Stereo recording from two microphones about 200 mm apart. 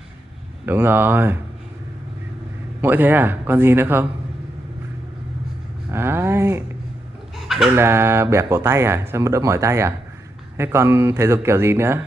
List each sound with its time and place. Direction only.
0.7 s speech: 10° right (ahead or behind)
2.8 s speech: 10° right (ahead or behind)
5.9 s a sound: 10° right (ahead or behind)
7.3 s chicken: centre (ahead or behind)
7.7 s speech: 10° right (ahead or behind)